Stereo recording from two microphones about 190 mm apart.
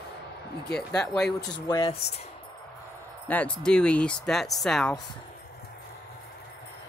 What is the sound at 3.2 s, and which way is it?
Speech, 5° left (ahead or behind).